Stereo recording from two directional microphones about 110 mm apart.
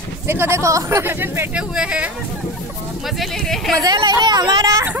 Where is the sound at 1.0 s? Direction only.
20° right (ahead or behind).